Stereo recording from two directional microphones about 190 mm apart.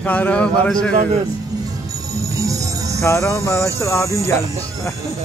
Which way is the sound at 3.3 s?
15° left (ahead or behind).